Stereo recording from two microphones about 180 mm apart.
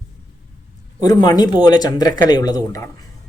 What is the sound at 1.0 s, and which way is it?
Speech, 20° left (ahead or behind).